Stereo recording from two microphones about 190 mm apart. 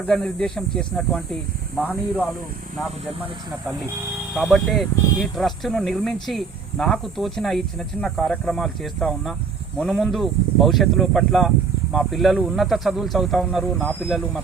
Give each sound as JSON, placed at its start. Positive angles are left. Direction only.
{"t": 0.1, "sound": "speech", "side_deg": 5}
{"t": 4.4, "sound": "speech", "side_deg": 0}